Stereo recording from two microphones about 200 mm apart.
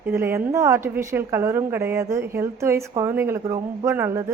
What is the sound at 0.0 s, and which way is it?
A woman's voice, 10° right (ahead or behind).